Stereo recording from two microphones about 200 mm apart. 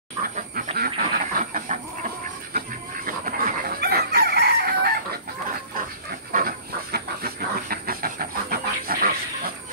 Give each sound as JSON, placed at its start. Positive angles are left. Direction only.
{"t": 0.6, "sound": "duck", "side_deg": -45}
{"t": 3.1, "sound": "chicken", "side_deg": -45}
{"t": 6.3, "sound": "hiss", "side_deg": -50}